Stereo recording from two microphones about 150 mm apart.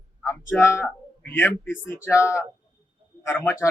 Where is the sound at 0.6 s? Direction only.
20° left (ahead or behind).